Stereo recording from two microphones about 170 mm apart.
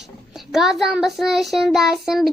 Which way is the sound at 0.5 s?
Centre (ahead or behind).